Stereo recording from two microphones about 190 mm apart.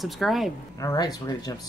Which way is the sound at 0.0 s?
Centre (ahead or behind).